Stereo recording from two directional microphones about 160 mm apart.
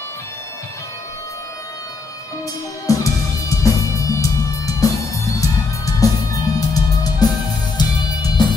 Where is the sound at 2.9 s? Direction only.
20° left (ahead or behind).